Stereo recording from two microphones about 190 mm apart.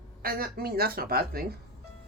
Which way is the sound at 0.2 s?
50° right (ahead or behind).